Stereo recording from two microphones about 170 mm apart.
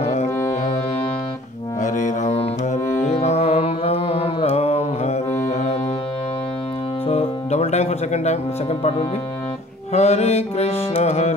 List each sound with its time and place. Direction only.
0.0 s music: 40° left (ahead or behind)
1.8 s music: 45° left (ahead or behind)
7.1 s music: 35° left (ahead or behind)
9.9 s music: 40° left (ahead or behind)